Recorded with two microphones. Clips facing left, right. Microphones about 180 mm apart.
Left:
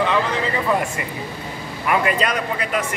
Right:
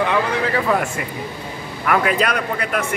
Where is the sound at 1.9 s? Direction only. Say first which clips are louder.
Right 1 dB; centre (ahead or behind).